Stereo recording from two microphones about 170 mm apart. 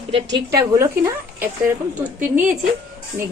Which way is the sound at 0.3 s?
20° right (ahead or behind).